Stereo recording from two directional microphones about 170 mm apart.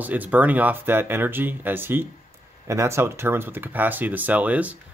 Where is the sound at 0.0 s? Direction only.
10° right (ahead or behind).